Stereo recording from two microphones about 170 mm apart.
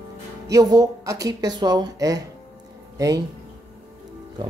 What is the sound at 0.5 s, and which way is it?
Speech, 20° right (ahead or behind).